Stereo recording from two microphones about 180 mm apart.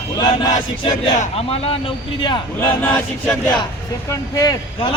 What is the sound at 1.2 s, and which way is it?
Speech, 35° left (ahead or behind).